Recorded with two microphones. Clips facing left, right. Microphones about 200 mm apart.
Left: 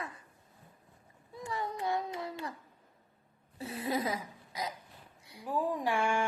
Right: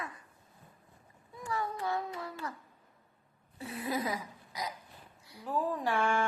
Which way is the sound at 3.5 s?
30° left (ahead or behind).